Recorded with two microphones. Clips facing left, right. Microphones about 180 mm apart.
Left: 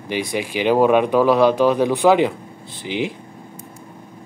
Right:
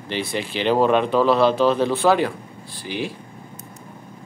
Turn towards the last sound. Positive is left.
turn(degrees=20)  # may be behind; listen again after turning